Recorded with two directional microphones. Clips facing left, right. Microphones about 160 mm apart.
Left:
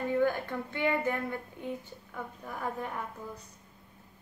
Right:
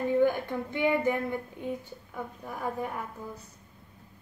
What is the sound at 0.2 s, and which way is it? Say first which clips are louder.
Speech: right 3 dB; 15° right (ahead or behind).